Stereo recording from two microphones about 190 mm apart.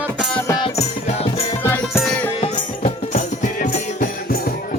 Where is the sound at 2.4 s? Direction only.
40° left (ahead or behind).